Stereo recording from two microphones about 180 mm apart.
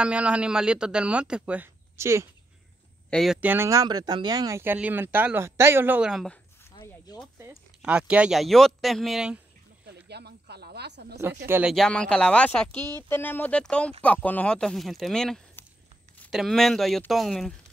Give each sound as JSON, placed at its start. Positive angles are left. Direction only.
{"t": 0.0, "sound": "speech", "side_deg": -5}
{"t": 3.1, "sound": "speech", "side_deg": 0}
{"t": 7.3, "sound": "speech", "side_deg": -10}
{"t": 10.0, "sound": "snake", "side_deg": -65}
{"t": 11.4, "sound": "speech", "side_deg": -10}
{"t": 11.7, "sound": "speech", "side_deg": 5}
{"t": 12.6, "sound": "speech", "side_deg": -20}
{"t": 13.1, "sound": "speech", "side_deg": 10}